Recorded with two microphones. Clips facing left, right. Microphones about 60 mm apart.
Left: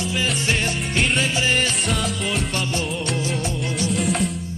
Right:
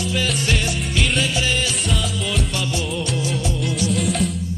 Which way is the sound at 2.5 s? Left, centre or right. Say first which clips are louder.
Even; left.